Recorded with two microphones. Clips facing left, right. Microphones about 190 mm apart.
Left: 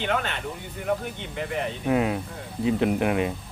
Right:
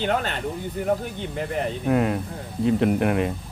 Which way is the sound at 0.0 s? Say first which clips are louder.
Right 3 dB; 40° right (ahead or behind).